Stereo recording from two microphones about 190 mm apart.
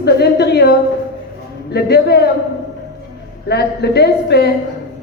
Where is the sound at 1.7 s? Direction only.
55° left (ahead or behind).